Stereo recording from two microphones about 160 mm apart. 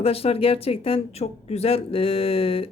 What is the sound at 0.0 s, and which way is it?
Speech, 35° left (ahead or behind).